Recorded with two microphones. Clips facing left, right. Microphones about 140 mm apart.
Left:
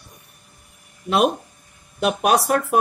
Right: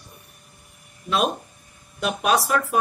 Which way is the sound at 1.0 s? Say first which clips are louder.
Left 4 dB; 65° left (ahead or behind).